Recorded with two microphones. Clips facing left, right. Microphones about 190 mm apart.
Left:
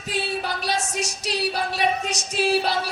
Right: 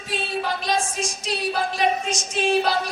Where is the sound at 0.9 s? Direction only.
70° left (ahead or behind).